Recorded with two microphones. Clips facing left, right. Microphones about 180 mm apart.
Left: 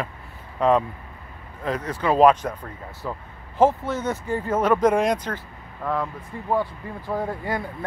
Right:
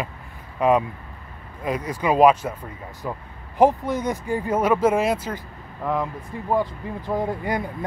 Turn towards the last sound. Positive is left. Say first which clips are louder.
# right 2 dB
turn(degrees=-15)  # may be behind; listen again after turning